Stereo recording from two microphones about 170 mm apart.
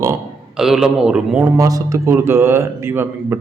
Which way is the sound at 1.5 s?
20° right (ahead or behind).